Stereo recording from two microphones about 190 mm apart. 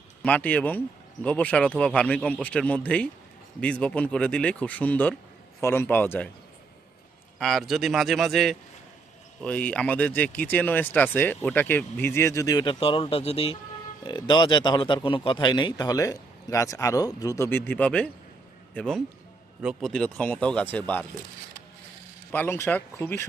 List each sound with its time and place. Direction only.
0.2 s speech: 5° left (ahead or behind)
7.3 s a man's voice: centre (ahead or behind)
22.3 s speech: 10° left (ahead or behind)